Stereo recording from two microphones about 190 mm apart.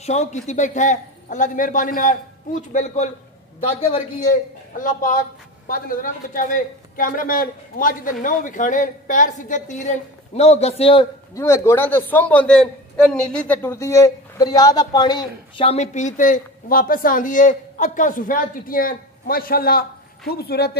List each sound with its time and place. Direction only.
0.0 s a man's voice: 35° left (ahead or behind)
4.2 s speech: 45° left (ahead or behind)
11.3 s a man's voice: 15° left (ahead or behind); by 20.7 s 55° left (ahead or behind)